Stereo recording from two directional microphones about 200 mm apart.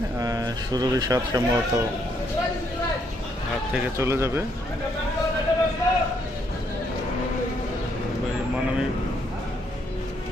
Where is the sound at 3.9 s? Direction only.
15° right (ahead or behind).